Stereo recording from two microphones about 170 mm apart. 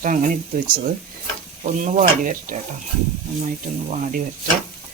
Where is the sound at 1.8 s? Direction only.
50° right (ahead or behind).